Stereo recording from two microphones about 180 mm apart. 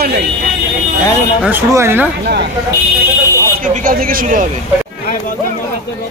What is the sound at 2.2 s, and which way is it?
Speech, 65° right (ahead or behind).